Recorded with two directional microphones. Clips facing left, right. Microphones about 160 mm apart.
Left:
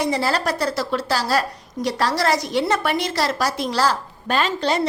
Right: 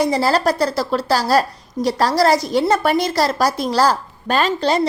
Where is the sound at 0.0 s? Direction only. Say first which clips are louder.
Right 5 dB; 40° right (ahead or behind).